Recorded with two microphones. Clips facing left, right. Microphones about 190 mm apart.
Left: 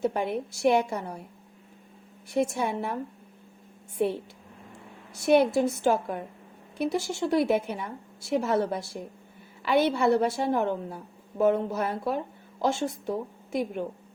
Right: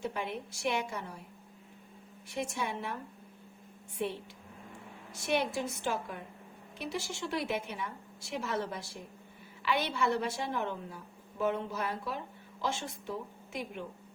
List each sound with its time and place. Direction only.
0.0 s a woman's voice: 45° left (ahead or behind)
2.3 s a woman's voice: 40° left (ahead or behind)
5.2 s a woman's voice: 40° left (ahead or behind)